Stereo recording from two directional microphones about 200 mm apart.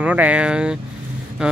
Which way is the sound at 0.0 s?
5° right (ahead or behind).